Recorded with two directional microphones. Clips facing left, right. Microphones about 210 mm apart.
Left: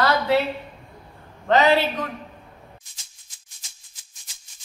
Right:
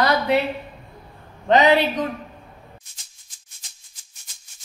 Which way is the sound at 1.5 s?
15° right (ahead or behind).